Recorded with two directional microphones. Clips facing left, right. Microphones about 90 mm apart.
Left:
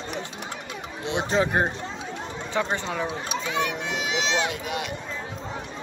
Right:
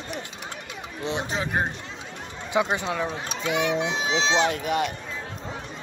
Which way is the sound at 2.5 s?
10° right (ahead or behind).